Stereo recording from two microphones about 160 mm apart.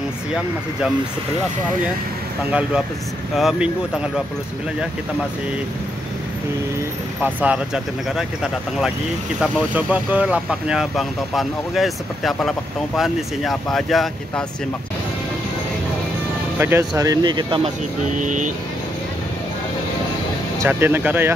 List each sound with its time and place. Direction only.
3.3 s speech: 5° right (ahead or behind)
7.2 s speech: 10° right (ahead or behind)
9.4 s speech: 10° right (ahead or behind)
16.5 s speech: 15° right (ahead or behind)
18.1 s speech: 50° right (ahead or behind)
20.5 s speech: 15° right (ahead or behind)